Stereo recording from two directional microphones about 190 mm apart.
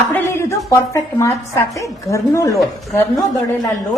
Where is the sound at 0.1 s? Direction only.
15° left (ahead or behind).